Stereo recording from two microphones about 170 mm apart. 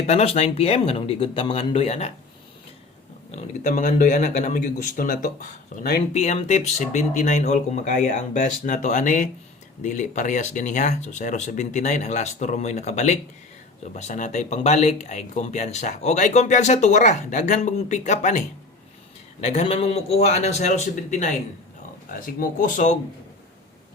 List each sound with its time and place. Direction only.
0.1 s speech: 40° left (ahead or behind)
3.3 s speech: 50° left (ahead or behind)
6.1 s speech: 40° left (ahead or behind)
19.5 s speech: 35° left (ahead or behind)